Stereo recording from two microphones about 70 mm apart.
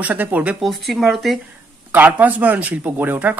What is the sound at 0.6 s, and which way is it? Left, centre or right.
Speech, centre.